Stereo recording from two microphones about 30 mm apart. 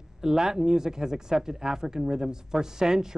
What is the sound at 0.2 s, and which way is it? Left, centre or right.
Speech, centre.